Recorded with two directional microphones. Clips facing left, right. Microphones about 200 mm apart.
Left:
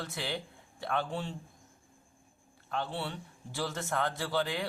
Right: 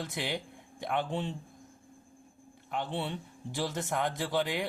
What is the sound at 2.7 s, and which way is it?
A man's voice, 20° right (ahead or behind).